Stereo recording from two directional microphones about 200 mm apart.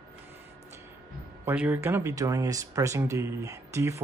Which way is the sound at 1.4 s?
10° right (ahead or behind).